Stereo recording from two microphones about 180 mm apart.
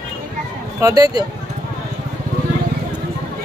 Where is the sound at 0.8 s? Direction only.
20° right (ahead or behind).